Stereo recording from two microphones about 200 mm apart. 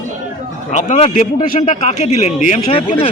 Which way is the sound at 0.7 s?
35° left (ahead or behind).